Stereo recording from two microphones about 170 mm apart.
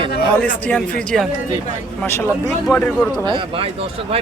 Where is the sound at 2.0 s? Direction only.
15° left (ahead or behind).